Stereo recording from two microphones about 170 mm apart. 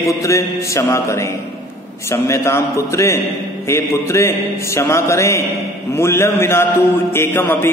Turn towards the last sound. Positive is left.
turn(degrees=10)  # may be behind; listen again after turning